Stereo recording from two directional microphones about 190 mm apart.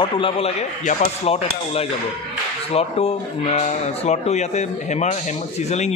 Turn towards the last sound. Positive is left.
turn(degrees=35)  # may be behind; listen again after turning